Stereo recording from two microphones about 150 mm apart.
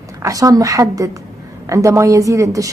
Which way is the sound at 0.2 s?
20° right (ahead or behind).